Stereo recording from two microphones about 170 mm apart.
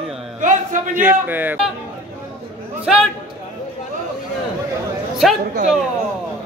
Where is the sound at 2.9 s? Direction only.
Centre (ahead or behind).